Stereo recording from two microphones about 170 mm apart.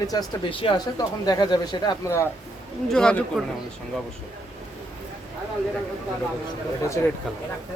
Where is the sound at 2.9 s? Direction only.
5° left (ahead or behind).